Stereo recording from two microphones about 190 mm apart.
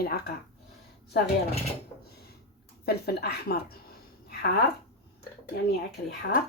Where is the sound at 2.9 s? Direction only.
55° left (ahead or behind).